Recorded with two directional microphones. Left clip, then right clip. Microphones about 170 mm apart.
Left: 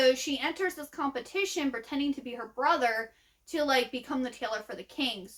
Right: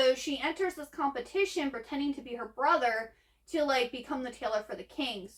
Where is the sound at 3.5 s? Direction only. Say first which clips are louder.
Left 1 dB; 35° left (ahead or behind).